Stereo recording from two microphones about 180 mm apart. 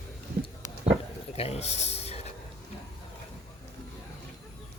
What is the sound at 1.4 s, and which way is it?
Speech, 35° left (ahead or behind).